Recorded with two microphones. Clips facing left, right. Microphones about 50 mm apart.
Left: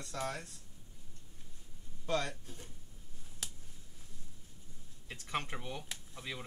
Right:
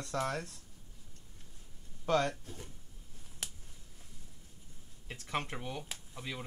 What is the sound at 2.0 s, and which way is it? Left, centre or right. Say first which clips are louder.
Speech: right 5 dB; right.